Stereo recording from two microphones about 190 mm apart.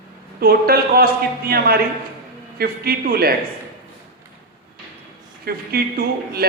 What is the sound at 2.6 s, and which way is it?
Speech, 55° right (ahead or behind).